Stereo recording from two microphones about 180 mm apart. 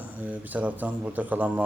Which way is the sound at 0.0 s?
10° right (ahead or behind).